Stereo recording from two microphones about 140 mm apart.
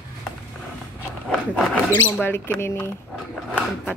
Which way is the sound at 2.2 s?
15° left (ahead or behind).